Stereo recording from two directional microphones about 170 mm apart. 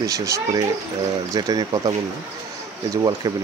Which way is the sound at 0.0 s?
20° right (ahead or behind).